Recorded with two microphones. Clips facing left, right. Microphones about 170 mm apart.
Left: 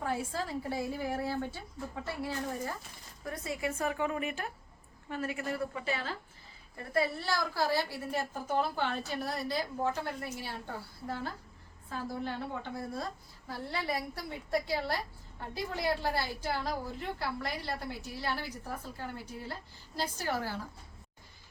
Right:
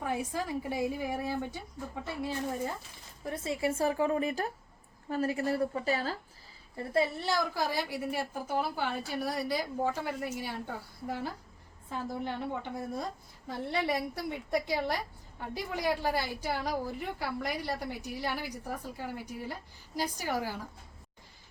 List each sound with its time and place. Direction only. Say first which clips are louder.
0.0 s a woman's voice: right 1 dB; 15° right (ahead or behind); by 6.1 s 40° right (ahead or behind)
6.7 s a woman's voice: right 2 dB; 25° right (ahead or behind)